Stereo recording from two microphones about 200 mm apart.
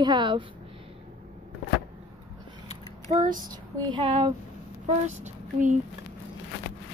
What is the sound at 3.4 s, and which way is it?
Speech, 20° right (ahead or behind).